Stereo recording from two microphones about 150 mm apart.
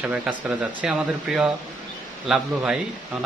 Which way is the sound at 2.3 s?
5° right (ahead or behind).